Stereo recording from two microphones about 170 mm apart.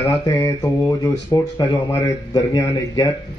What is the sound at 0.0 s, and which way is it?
Speech, 20° left (ahead or behind).